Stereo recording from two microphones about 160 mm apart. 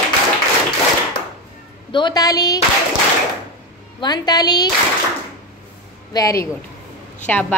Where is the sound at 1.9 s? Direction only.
30° left (ahead or behind).